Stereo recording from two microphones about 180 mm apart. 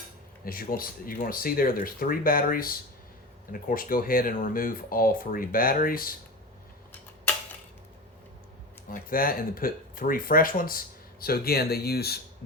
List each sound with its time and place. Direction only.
0.4 s speech: 55° left (ahead or behind)
8.9 s speech: 55° left (ahead or behind)